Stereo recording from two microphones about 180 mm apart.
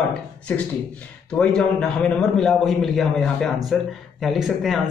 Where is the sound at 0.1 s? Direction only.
5° left (ahead or behind).